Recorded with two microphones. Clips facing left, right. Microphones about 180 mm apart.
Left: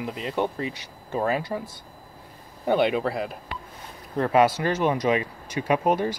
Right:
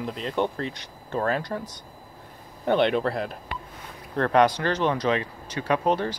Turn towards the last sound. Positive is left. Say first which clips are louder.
# left 1 dB
turn(degrees=10)  # may be behind; listen again after turning